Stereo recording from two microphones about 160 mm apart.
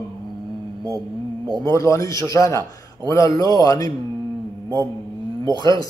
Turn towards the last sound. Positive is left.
turn(degrees=-25)  # may be behind; listen again after turning